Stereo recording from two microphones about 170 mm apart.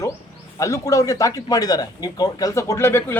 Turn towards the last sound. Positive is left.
turn(degrees=15)  # may be behind; listen again after turning